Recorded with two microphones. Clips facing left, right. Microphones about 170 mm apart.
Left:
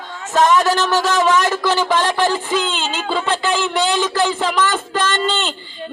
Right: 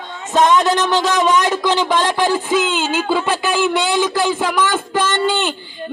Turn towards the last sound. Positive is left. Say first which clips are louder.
# right 2 dB
turn(degrees=-10)  # may be behind; listen again after turning